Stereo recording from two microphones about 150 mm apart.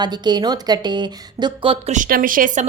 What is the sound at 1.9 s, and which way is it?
Speech, 65° right (ahead or behind).